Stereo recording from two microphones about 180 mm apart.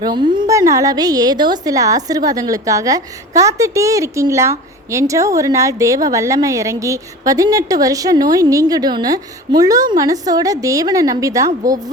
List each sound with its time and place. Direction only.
0.0 s a woman's voice: 25° right (ahead or behind)